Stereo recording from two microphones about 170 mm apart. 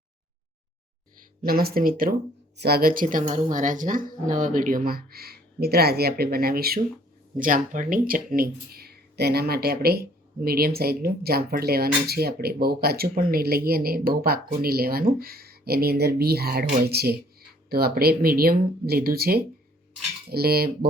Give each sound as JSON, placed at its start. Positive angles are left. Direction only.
{"t": 1.4, "sound": "speech", "side_deg": -60}
{"t": 2.6, "sound": "speech", "side_deg": -65}